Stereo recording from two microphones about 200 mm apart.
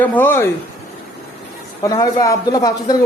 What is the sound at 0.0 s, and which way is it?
Speech, 10° left (ahead or behind).